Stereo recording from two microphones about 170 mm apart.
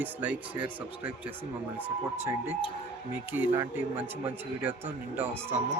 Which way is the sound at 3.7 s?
10° right (ahead or behind).